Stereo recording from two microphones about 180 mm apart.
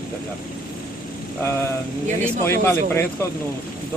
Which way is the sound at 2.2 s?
10° left (ahead or behind).